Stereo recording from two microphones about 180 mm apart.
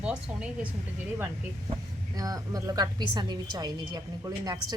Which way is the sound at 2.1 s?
20° right (ahead or behind).